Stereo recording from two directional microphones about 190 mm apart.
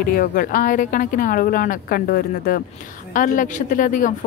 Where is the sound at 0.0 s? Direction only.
50° left (ahead or behind).